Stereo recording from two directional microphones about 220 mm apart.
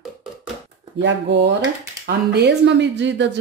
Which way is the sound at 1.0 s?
55° right (ahead or behind).